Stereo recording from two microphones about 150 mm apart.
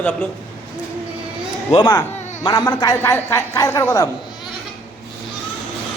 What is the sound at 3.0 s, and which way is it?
Speech, 15° left (ahead or behind).